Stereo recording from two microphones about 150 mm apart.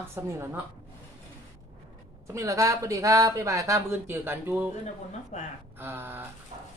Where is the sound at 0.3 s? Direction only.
15° right (ahead or behind).